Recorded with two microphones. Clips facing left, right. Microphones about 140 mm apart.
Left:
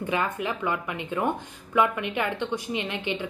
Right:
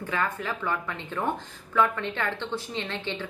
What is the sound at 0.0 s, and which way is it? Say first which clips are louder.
A woman's voice: left 2 dB; 15° left (ahead or behind).